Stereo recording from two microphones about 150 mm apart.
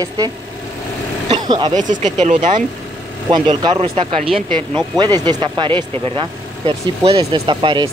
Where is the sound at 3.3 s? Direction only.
35° right (ahead or behind).